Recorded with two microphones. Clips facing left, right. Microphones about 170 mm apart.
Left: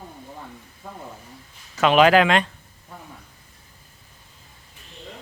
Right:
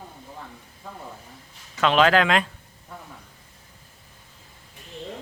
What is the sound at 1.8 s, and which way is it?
Speech, 10° left (ahead or behind).